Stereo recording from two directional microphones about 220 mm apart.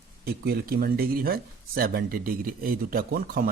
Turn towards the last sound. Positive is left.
turn(degrees=-40)  # may be behind; listen again after turning